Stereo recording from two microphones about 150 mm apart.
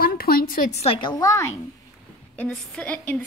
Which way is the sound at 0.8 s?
35° left (ahead or behind).